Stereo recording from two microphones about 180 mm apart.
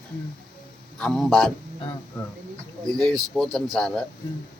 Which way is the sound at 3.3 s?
Centre (ahead or behind).